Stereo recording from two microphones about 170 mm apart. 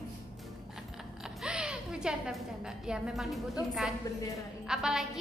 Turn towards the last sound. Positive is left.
turn(degrees=-5)  # may be behind; listen again after turning